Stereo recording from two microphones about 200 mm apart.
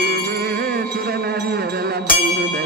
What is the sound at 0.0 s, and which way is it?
Music, 50° right (ahead or behind).